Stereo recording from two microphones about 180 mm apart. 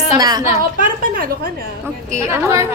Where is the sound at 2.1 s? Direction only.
15° right (ahead or behind).